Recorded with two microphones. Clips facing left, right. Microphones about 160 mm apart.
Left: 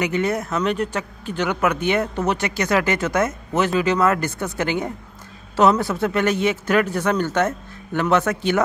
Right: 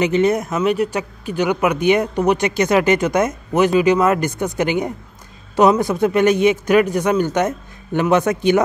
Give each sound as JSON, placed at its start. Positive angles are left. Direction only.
{"t": 0.0, "sound": "speech", "side_deg": -20}